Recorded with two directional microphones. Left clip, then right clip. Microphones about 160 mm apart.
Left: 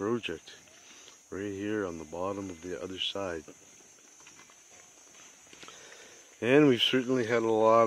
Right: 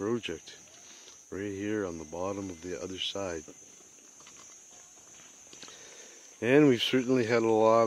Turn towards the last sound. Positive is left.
turn(degrees=-25)  # may be behind; listen again after turning